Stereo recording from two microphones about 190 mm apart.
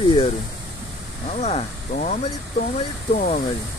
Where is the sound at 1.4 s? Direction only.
40° left (ahead or behind).